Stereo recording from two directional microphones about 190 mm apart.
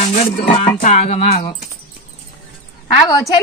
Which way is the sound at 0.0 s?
35° left (ahead or behind).